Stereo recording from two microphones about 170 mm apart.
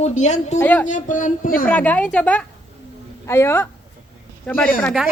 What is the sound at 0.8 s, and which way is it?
Speech, 50° left (ahead or behind).